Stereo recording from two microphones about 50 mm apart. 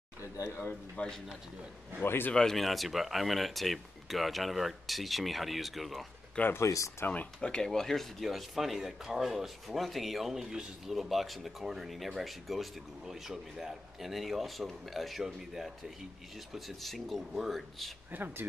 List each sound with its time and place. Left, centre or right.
0.5 s speech: left
1.0 s a man's voice: left
2.0 s speech: left
2.5 s speech: centre
6.6 s speech: left
7.3 s speech: centre
10.3 s a man's voice: centre
10.9 s a man's voice: centre
18.1 s speech: right